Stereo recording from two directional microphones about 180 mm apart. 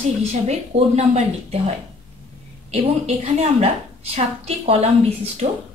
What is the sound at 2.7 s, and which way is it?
A woman's voice, 35° right (ahead or behind).